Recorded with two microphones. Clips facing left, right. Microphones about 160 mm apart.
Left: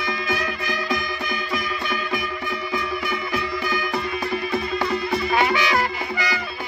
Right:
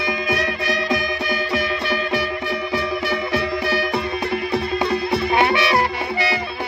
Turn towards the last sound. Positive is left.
turn(degrees=-30)  # may be behind; listen again after turning